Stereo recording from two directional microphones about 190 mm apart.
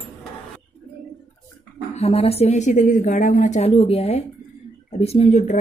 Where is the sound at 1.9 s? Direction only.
35° left (ahead or behind).